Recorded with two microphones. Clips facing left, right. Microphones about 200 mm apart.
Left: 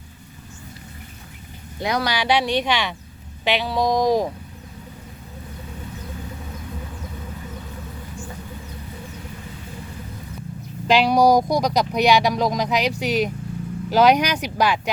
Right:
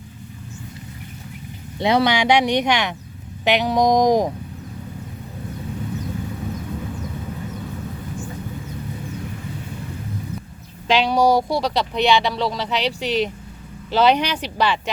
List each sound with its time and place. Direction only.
1.8 s speech: 25° right (ahead or behind)
10.8 s speech: 5° left (ahead or behind)